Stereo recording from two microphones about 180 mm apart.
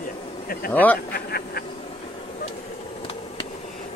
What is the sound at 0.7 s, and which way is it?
Speech, 10° left (ahead or behind).